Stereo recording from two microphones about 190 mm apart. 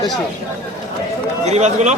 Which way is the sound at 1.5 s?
35° right (ahead or behind).